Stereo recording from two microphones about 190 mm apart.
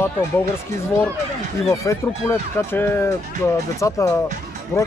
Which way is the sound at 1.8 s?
15° left (ahead or behind).